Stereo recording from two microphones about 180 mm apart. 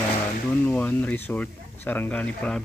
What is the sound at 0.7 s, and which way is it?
Speech, 10° left (ahead or behind).